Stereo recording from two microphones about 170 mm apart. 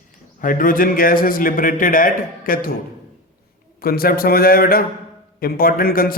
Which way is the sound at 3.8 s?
60° left (ahead or behind).